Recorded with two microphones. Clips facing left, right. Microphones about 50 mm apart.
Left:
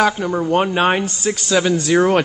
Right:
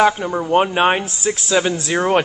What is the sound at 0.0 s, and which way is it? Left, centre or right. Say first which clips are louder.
Speech: right 1 dB; centre.